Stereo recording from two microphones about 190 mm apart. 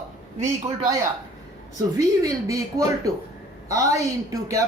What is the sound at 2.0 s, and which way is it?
A woman's voice, 15° right (ahead or behind).